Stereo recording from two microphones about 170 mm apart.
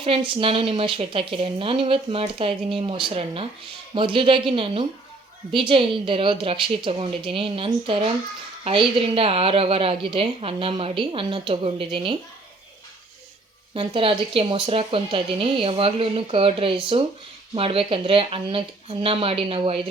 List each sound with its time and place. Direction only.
0.0 s a woman's voice: 30° right (ahead or behind)
13.7 s a woman's voice: 30° right (ahead or behind)